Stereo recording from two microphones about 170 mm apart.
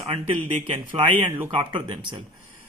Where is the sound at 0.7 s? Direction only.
30° right (ahead or behind).